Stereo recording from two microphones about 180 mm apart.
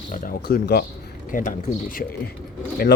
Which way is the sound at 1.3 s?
50° left (ahead or behind).